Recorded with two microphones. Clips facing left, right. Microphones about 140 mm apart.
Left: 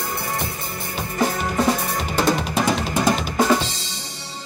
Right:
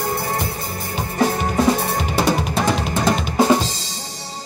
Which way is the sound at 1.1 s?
35° right (ahead or behind).